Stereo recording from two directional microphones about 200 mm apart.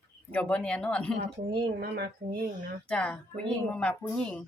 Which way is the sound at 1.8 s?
55° right (ahead or behind).